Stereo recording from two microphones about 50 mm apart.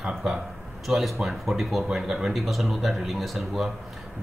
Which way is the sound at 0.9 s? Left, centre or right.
Centre.